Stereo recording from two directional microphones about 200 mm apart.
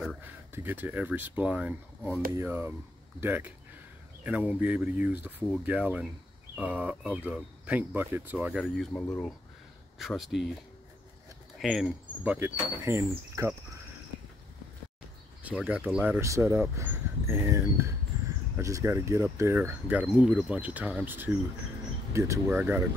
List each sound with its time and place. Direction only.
0.5 s speech: 10° right (ahead or behind)
11.6 s speech: centre (ahead or behind)
15.4 s speech: 5° right (ahead or behind)